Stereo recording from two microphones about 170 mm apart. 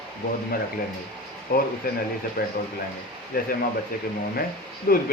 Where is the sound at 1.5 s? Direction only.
60° left (ahead or behind).